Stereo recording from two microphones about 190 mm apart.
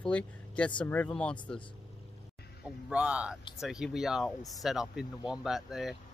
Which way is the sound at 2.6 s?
5° right (ahead or behind).